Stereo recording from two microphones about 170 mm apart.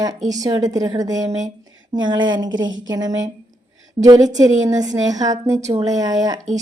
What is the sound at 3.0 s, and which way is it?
Speech, 90° right.